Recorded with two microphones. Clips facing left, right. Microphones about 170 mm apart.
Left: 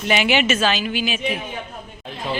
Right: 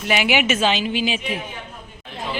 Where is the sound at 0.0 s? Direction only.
10° right (ahead or behind); by 1.2 s 25° right (ahead or behind).